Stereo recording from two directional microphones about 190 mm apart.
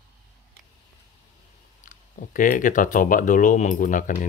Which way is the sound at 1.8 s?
45° left (ahead or behind).